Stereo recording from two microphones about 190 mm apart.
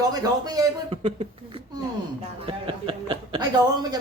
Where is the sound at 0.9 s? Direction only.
30° right (ahead or behind).